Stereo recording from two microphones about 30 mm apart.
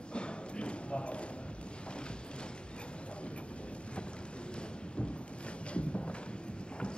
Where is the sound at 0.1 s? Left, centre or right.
Left.